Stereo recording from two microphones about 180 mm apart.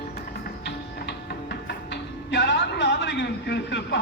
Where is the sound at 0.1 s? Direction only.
60° left (ahead or behind).